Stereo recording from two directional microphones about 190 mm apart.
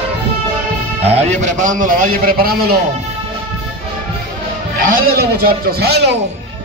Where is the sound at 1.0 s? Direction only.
35° right (ahead or behind); by 2.8 s 55° right (ahead or behind).